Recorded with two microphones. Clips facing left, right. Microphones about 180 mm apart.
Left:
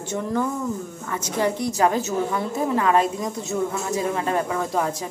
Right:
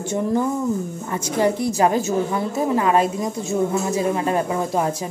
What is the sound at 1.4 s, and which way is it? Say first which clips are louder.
A woman's voice: right 3 dB; 15° right (ahead or behind).